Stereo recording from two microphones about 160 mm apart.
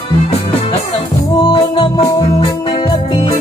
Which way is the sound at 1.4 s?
30° left (ahead or behind).